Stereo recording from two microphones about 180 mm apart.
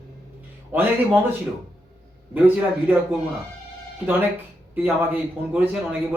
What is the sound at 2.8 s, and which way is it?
Speech, 10° right (ahead or behind).